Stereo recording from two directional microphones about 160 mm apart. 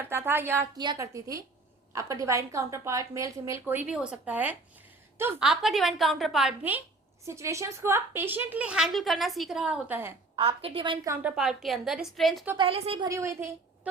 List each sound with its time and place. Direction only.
0.0 s a woman's voice: 15° right (ahead or behind)
10.3 s a woman's voice: 35° right (ahead or behind)
11.0 s a woman's voice: 20° right (ahead or behind)
11.3 s a woman's voice: 5° right (ahead or behind)
12.5 s a woman's voice: 35° right (ahead or behind)
13.1 s a woman's voice: 20° right (ahead or behind)